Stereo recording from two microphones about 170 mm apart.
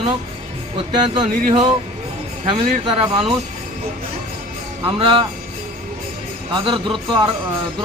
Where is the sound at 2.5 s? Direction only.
30° right (ahead or behind).